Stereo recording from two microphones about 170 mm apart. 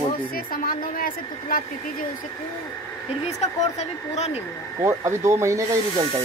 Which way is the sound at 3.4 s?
40° left (ahead or behind).